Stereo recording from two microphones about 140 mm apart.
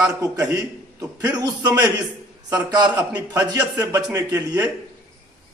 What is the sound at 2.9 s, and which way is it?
A man's voice, 25° right (ahead or behind).